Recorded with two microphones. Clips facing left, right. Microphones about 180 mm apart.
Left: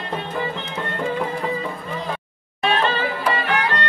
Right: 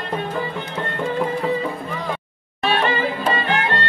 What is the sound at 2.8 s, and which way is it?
Music, 15° right (ahead or behind).